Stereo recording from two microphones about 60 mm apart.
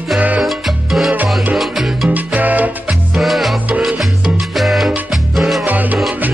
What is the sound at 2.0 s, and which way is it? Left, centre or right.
Salsa music, right.